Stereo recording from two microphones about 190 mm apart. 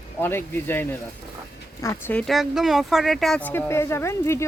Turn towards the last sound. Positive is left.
turn(degrees=15)  # may be behind; listen again after turning